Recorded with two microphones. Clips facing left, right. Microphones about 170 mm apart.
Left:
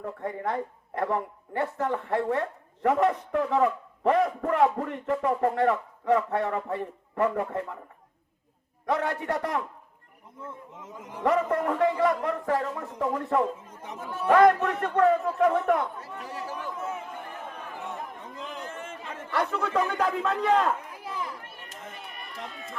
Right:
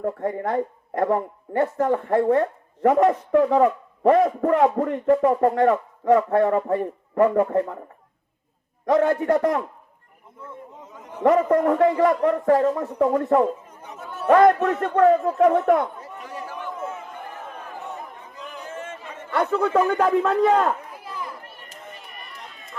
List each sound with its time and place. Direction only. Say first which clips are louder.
0.0 s speech: right 7 dB; 40° right (ahead or behind)
8.9 s speech: right 9 dB; 35° right (ahead or behind)
11.2 s speech: right 7 dB; 40° right (ahead or behind)
16.2 s chatter: right 2 dB; 35° left (ahead or behind)
19.3 s speech: right 7 dB; 40° right (ahead or behind)